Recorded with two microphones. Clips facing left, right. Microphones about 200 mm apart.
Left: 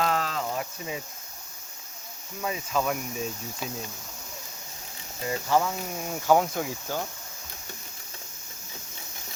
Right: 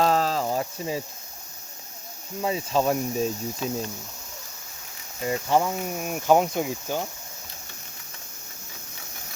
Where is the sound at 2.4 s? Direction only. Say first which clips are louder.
Right 5 dB; 30° right (ahead or behind).